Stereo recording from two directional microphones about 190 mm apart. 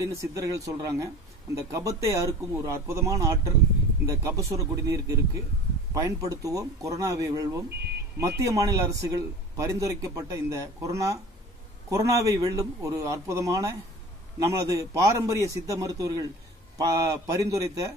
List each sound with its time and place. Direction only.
0.0 s a man's voice: 15° right (ahead or behind)